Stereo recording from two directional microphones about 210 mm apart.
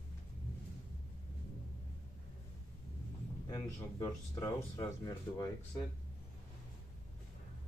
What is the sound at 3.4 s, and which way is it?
Speech, 15° left (ahead or behind).